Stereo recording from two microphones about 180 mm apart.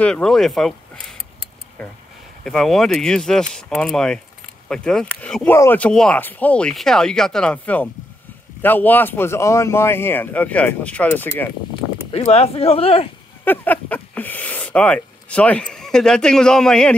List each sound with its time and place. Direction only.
0.0 s a man's voice: 5° left (ahead or behind)
12.1 s speech: 35° left (ahead or behind)
13.4 s speech: 10° left (ahead or behind)